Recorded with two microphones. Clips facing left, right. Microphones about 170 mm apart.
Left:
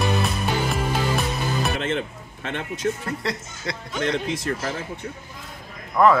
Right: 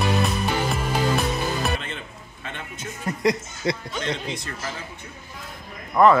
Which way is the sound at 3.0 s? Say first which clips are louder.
Right 5 dB; 20° right (ahead or behind).